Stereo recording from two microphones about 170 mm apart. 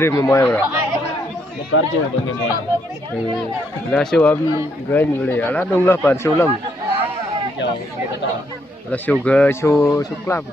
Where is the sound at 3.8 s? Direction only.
5° left (ahead or behind).